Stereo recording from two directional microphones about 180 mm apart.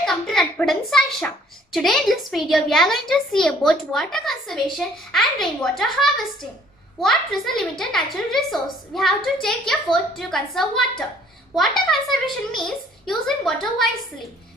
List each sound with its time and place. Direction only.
0.0 s a child's voice: centre (ahead or behind)